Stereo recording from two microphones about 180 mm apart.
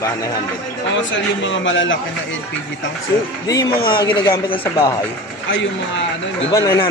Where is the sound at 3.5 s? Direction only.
20° left (ahead or behind).